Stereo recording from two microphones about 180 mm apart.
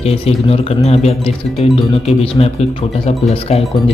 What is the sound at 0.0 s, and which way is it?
Speech, 35° left (ahead or behind).